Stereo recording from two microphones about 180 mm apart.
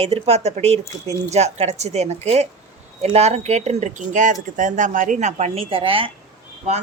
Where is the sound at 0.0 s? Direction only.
35° right (ahead or behind).